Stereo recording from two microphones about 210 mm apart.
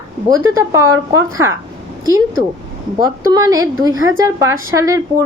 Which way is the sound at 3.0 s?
15° right (ahead or behind).